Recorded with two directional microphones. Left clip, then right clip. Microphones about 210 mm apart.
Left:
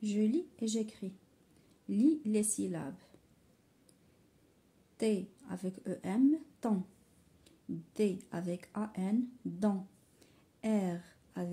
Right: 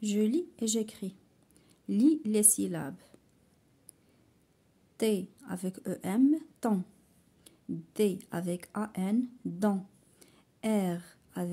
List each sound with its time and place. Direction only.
0.0 s speech: 40° right (ahead or behind)
4.9 s speech: 35° right (ahead or behind)
10.2 s a sound: 30° right (ahead or behind)